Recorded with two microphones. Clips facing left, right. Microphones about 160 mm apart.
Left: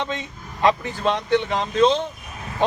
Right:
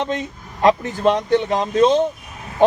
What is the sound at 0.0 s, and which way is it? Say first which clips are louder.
A man's voice: right 5 dB; 45° right (ahead or behind).